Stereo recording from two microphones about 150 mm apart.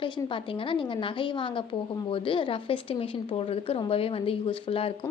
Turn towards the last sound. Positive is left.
turn(degrees=35)  # may be behind; listen again after turning